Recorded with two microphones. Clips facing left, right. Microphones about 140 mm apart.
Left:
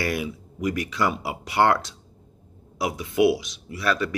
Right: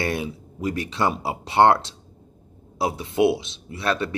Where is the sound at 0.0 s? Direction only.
30° right (ahead or behind).